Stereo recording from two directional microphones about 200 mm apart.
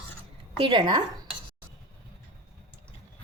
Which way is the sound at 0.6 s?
25° right (ahead or behind).